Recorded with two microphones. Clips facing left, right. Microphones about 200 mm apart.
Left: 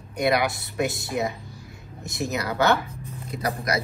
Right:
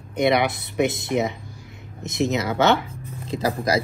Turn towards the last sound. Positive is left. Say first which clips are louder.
# right 5 dB
turn(degrees=-30)  # may be behind; listen again after turning